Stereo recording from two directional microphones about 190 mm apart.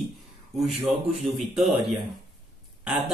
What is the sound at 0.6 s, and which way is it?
Speech, centre (ahead or behind).